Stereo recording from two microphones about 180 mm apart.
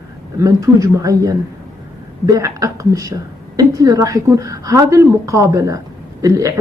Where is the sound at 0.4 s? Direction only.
20° right (ahead or behind).